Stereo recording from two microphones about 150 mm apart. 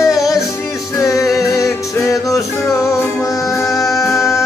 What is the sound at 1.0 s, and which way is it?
Music, 20° left (ahead or behind).